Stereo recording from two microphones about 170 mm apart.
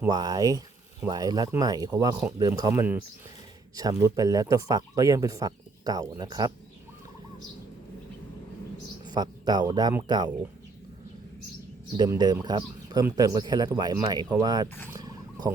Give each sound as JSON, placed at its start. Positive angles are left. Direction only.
{"t": 0.1, "sound": "speech", "side_deg": -25}
{"t": 9.0, "sound": "speech", "side_deg": -25}
{"t": 11.9, "sound": "speech", "side_deg": -25}
{"t": 14.8, "sound": "a sound", "side_deg": -20}